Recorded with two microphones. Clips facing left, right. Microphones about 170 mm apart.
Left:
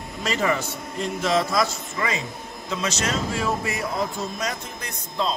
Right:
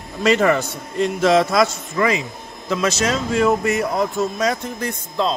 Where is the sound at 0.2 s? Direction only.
70° right (ahead or behind).